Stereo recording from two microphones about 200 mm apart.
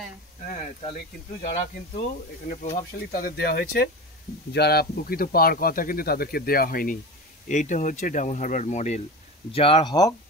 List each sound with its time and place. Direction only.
0.5 s speech: 35° left (ahead or behind)
2.4 s speech: 35° left (ahead or behind); by 10.1 s 20° left (ahead or behind)